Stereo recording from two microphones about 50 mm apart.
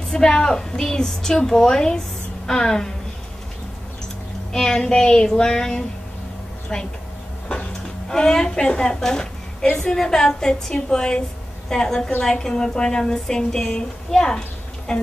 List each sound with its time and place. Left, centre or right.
0.1 s a woman's voice: centre
4.5 s a woman's voice: centre
7.4 s cupboard open or close: left
8.1 s a woman's voice: centre